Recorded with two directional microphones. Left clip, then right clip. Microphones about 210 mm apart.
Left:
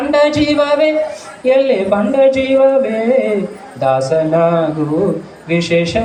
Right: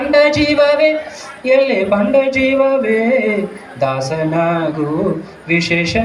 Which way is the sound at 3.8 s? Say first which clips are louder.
Left 4 dB; 30° right (ahead or behind).